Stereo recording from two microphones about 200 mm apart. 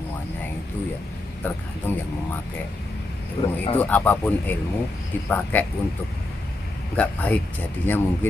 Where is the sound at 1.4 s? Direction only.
10° left (ahead or behind).